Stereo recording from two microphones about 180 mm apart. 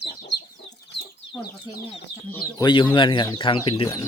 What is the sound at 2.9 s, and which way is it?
Speech, 25° left (ahead or behind).